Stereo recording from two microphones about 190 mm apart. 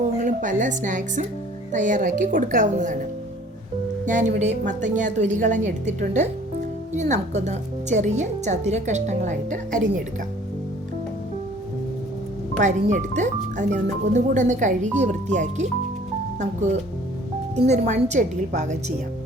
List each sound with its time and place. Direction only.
0.2 s speech: 40° right (ahead or behind)
4.0 s speech: 40° right (ahead or behind)
12.5 s speech: 40° right (ahead or behind)
17.5 s speech: 35° right (ahead or behind)